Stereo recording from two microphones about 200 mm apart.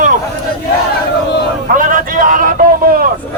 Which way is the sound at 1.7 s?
45° right (ahead or behind).